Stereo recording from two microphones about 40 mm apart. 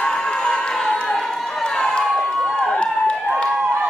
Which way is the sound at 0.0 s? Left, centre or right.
Centre.